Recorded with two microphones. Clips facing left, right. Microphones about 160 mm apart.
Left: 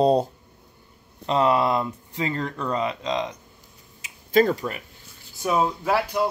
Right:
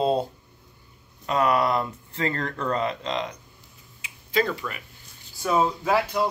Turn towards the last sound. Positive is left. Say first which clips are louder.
# even
turn(degrees=5)  # may be behind; listen again after turning